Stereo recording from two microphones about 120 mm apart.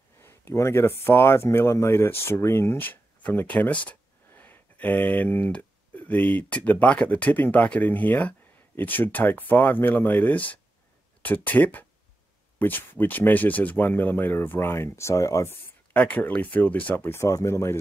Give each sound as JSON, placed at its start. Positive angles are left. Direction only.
{"t": 0.2, "sound": "speech", "side_deg": 20}
{"t": 15.9, "sound": "speech", "side_deg": 15}